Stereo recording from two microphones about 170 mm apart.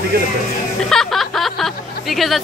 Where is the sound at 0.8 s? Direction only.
5° left (ahead or behind).